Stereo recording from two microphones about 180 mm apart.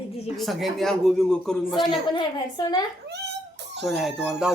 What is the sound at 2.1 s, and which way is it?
Speech, 25° left (ahead or behind).